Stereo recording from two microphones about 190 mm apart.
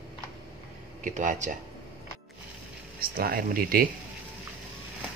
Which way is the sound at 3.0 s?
50° right (ahead or behind).